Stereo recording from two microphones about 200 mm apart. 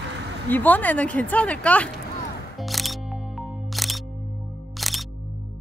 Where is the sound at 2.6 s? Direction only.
Centre (ahead or behind).